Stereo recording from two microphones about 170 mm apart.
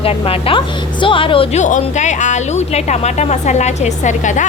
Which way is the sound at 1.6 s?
45° left (ahead or behind).